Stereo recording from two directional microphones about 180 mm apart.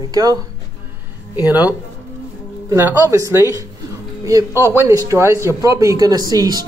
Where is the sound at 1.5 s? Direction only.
10° right (ahead or behind).